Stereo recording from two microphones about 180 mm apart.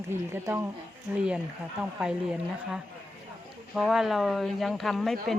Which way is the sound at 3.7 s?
Centre (ahead or behind).